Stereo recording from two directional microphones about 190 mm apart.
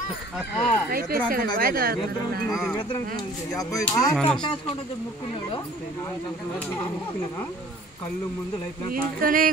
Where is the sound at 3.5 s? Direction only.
20° left (ahead or behind).